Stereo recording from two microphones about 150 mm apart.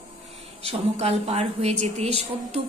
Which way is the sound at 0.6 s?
45° right (ahead or behind).